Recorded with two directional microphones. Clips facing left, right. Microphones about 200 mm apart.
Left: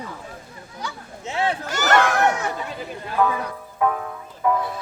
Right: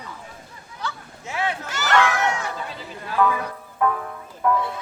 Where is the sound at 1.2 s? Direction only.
30° left (ahead or behind).